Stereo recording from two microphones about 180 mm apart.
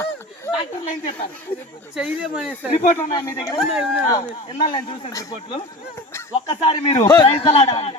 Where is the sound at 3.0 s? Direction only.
15° left (ahead or behind).